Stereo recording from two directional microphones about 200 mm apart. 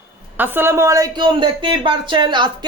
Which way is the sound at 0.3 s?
10° right (ahead or behind).